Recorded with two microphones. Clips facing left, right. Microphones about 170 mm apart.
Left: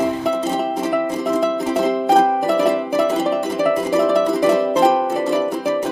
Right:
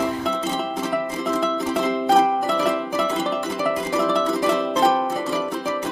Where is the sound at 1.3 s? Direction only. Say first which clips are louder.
Left 4 dB; 15° left (ahead or behind).